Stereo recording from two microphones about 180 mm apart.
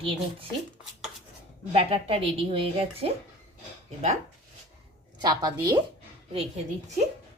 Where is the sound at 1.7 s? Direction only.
35° right (ahead or behind).